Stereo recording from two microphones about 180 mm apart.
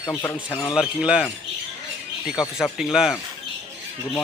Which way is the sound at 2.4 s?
5° right (ahead or behind).